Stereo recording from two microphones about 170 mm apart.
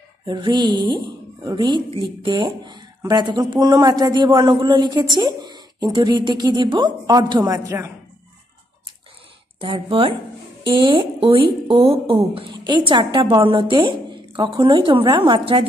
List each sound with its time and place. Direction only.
0.3 s speech: 25° right (ahead or behind)
9.6 s speech: 30° right (ahead or behind)